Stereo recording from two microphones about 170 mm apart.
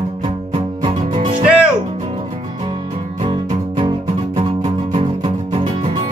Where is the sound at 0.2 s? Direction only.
40° right (ahead or behind).